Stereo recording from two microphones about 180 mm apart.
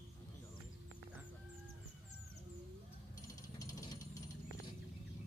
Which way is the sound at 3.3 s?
20° left (ahead or behind).